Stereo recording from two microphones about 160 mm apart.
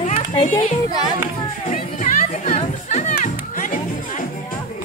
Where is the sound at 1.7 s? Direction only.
50° left (ahead or behind).